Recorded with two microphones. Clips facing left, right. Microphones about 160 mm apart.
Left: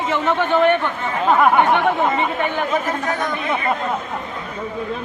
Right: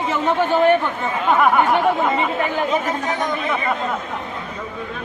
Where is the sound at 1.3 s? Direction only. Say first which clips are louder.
Left 1 dB; 5° left (ahead or behind).